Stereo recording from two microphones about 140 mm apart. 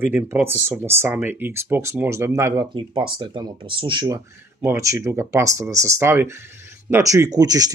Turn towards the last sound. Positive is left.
turn(degrees=-25)  # may be behind; listen again after turning